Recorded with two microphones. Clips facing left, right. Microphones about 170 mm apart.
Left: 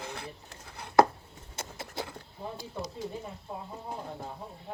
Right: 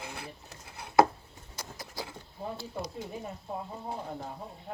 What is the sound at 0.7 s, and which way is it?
Chopping, 10° right (ahead or behind).